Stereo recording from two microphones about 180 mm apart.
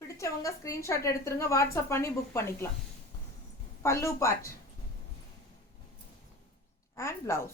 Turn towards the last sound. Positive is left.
turn(degrees=15)  # may be behind; listen again after turning